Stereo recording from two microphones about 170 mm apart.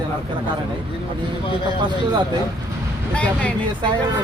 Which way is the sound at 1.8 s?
25° right (ahead or behind).